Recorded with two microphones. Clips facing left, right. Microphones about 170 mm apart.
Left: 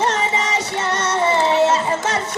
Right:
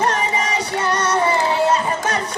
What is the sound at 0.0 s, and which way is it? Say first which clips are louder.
Music: even; 25° left (ahead or behind).